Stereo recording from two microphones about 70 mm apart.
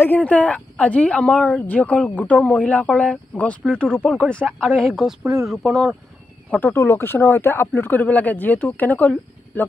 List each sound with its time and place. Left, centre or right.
0.0 s speech: left; by 5.0 s centre
5.2 s speech: right
5.5 s speech: centre
6.6 s speech: left